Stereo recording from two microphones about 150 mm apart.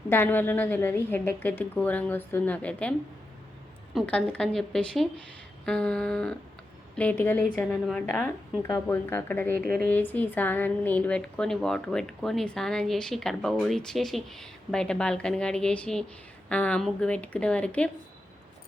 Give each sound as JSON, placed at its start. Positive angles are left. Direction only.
{"t": 0.1, "sound": "a woman's voice", "side_deg": 15}
{"t": 3.9, "sound": "a woman's voice", "side_deg": 10}
{"t": 9.6, "sound": "a woman's voice", "side_deg": -85}
{"t": 9.9, "sound": "a woman's voice", "side_deg": 10}